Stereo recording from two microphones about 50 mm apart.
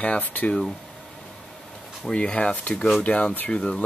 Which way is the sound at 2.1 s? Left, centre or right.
Left.